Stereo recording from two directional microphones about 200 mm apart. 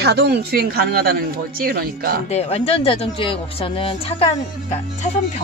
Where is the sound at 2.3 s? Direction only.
30° left (ahead or behind).